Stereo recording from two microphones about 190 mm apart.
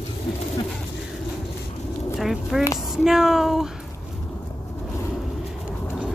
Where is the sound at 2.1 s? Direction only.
Centre (ahead or behind).